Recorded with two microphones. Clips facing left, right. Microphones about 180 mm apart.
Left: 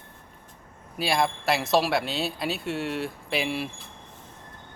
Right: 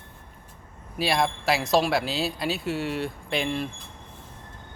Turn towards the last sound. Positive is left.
turn(degrees=5)  # may be behind; listen again after turning